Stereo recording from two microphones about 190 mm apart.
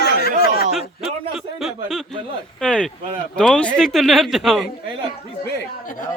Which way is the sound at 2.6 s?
5° left (ahead or behind).